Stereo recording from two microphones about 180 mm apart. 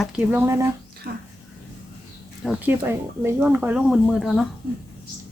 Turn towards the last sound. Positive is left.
turn(degrees=0)  # may be behind; listen again after turning